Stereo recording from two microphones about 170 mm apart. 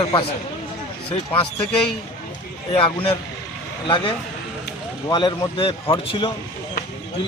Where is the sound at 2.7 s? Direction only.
30° left (ahead or behind).